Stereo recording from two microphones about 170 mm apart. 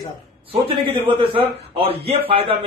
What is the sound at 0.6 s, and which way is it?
A man's voice, 30° right (ahead or behind).